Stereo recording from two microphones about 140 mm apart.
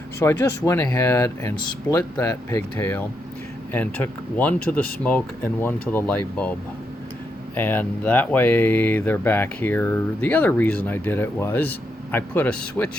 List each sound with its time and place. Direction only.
0.2 s speech: 20° left (ahead or behind)